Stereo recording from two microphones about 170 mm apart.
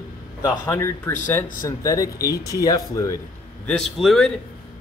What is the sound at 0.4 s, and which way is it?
Speech, 15° left (ahead or behind).